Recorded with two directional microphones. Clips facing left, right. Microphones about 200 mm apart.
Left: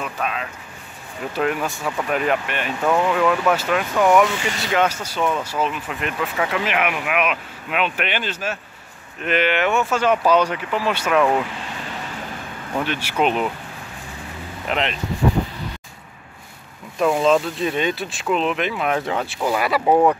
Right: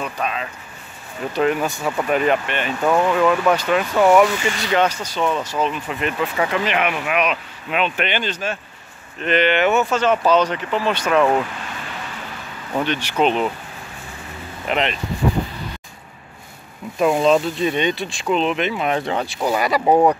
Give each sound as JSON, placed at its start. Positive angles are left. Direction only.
{"t": 0.0, "sound": "speech", "side_deg": 0}
{"t": 9.9, "sound": "speech", "side_deg": 10}
{"t": 12.8, "sound": "speech", "side_deg": 5}
{"t": 14.7, "sound": "speech", "side_deg": 0}
{"t": 17.0, "sound": "speech", "side_deg": -5}
{"t": 19.8, "sound": "speech", "side_deg": -15}